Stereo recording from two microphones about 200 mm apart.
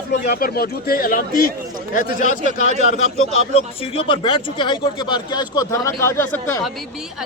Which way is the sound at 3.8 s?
25° left (ahead or behind).